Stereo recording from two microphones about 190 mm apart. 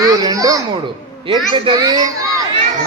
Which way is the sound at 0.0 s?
20° right (ahead or behind).